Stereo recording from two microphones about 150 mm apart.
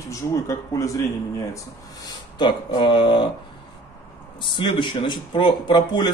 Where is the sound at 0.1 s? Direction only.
20° left (ahead or behind).